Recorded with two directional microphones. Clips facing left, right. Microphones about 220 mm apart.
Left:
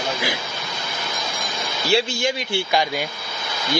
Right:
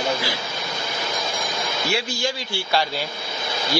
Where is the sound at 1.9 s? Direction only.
25° left (ahead or behind).